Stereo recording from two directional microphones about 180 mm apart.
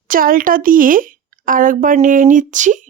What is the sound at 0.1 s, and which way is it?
A woman's voice, 50° right (ahead or behind).